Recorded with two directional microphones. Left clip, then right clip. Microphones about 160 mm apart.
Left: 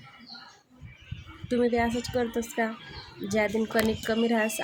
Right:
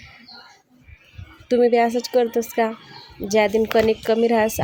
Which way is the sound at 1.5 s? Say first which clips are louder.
Right 9 dB; 40° right (ahead or behind).